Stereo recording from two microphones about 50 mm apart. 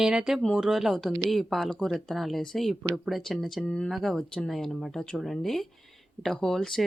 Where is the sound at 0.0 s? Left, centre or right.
Centre.